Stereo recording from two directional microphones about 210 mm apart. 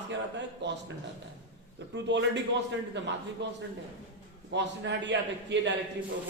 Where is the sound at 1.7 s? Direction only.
55° right (ahead or behind).